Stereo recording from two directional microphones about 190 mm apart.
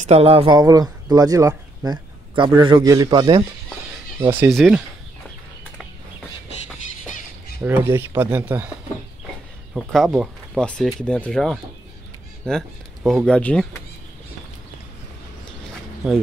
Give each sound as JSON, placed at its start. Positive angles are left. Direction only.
{"t": 0.0, "sound": "speech", "side_deg": -30}
{"t": 1.9, "sound": "a man's voice", "side_deg": -25}
{"t": 7.6, "sound": "speech", "side_deg": -10}
{"t": 9.8, "sound": "speech", "side_deg": 0}